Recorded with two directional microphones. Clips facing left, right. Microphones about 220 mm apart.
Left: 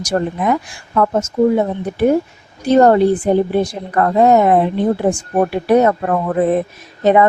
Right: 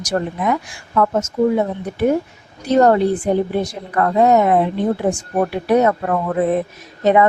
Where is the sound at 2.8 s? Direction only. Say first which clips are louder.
Left 3 dB; 30° left (ahead or behind).